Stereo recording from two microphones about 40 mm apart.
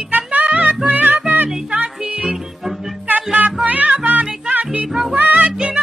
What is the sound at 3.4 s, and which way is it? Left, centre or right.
Music, right.